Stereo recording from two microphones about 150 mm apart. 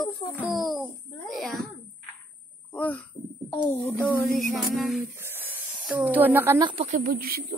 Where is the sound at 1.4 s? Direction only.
Centre (ahead or behind).